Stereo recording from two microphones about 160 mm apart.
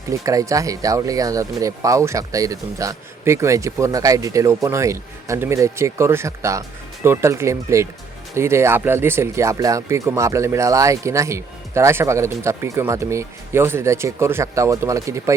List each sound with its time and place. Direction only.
0.1 s speech: 20° right (ahead or behind)